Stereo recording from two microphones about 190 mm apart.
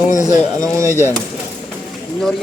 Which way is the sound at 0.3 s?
15° right (ahead or behind).